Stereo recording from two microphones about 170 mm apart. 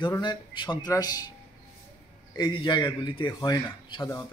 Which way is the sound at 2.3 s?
25° left (ahead or behind).